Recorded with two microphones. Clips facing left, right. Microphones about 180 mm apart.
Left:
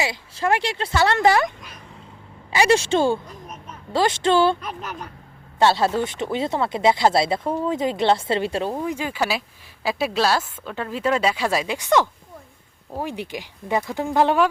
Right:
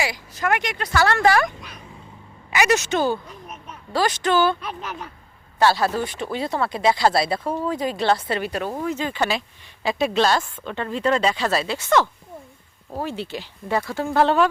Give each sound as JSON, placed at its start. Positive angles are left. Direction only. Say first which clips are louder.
{"t": 0.0, "sound": "speech", "louder": "left 1 dB", "side_deg": 25}
{"t": 2.5, "sound": "speech", "louder": "left 2 dB", "side_deg": 30}
{"t": 5.5, "sound": "a woman's voice", "louder": "left 1 dB", "side_deg": 25}